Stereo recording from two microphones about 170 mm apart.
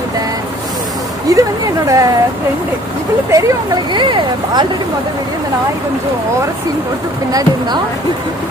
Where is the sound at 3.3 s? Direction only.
25° right (ahead or behind).